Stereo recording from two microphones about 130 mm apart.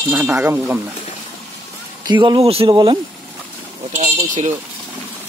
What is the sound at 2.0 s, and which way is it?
Speech, 35° right (ahead or behind).